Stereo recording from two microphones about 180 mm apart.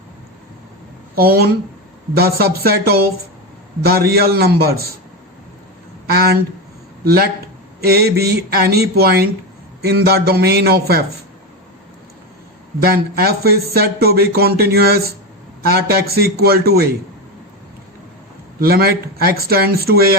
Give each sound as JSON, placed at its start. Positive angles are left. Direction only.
{"t": 1.1, "sound": "speech", "side_deg": -55}
{"t": 6.1, "sound": "speech", "side_deg": -60}
{"t": 12.8, "sound": "speech", "side_deg": -60}
{"t": 18.6, "sound": "speech", "side_deg": -55}